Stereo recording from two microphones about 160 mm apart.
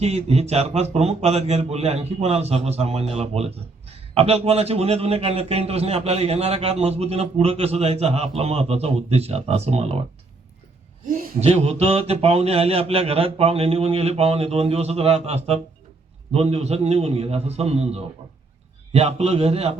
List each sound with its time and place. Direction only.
0.0 s a man's voice: 40° right (ahead or behind)
11.3 s a man's voice: 40° right (ahead or behind)